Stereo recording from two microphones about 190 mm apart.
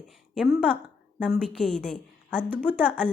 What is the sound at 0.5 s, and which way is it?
A woman's voice, 5° left (ahead or behind).